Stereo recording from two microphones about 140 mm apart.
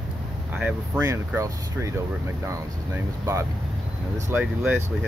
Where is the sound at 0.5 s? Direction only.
15° right (ahead or behind).